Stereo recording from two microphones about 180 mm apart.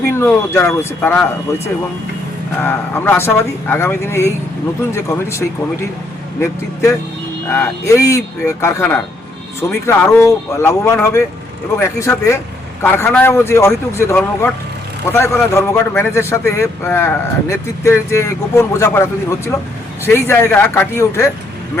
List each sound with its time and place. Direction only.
0.0 s speech: 15° left (ahead or behind)
2.6 s speech: 10° left (ahead or behind)
7.5 s speech: 15° left (ahead or behind)